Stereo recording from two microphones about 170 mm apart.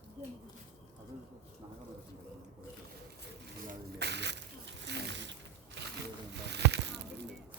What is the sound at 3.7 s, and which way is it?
Snake, 80° right.